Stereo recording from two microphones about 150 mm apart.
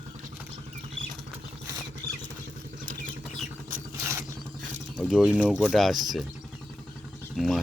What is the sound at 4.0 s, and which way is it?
Rodents, 20° right (ahead or behind).